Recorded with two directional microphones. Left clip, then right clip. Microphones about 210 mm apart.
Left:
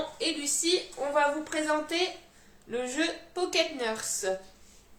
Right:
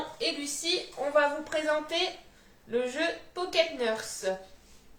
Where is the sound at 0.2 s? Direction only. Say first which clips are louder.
Even; 10° left (ahead or behind).